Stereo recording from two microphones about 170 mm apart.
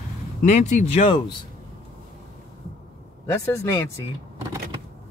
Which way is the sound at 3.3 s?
20° left (ahead or behind).